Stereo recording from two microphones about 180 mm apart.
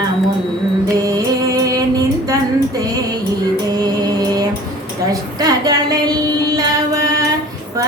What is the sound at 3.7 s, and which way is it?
Music, 20° right (ahead or behind).